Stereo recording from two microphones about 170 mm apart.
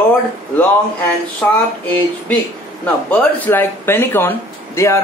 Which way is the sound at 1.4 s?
10° left (ahead or behind).